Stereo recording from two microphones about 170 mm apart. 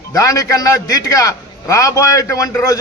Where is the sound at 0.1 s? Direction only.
20° left (ahead or behind).